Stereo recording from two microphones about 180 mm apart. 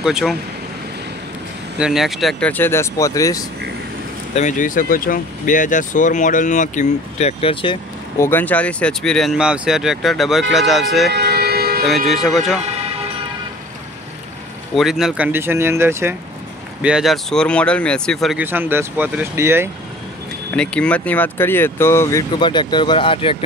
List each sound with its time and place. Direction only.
0.0 s speech: centre (ahead or behind)
1.8 s speech: centre (ahead or behind); by 3.4 s 20° left (ahead or behind)
4.4 s speech: 45° left (ahead or behind); by 7.8 s 30° left (ahead or behind)
8.2 s speech: 10° left (ahead or behind)
11.1 s music: 65° right (ahead or behind)
12.1 s speech: centre (ahead or behind)
14.8 s speech: centre (ahead or behind)
16.8 s speech: 5° right (ahead or behind)
18.4 s speech: 10° right (ahead or behind)
20.5 s speech: 5° left (ahead or behind)
22.4 s speech: 25° left (ahead or behind)